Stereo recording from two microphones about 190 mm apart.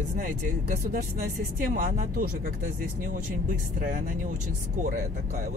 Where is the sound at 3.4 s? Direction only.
45° right (ahead or behind).